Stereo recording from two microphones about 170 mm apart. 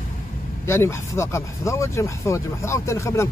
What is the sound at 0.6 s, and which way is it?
Speech, 15° left (ahead or behind).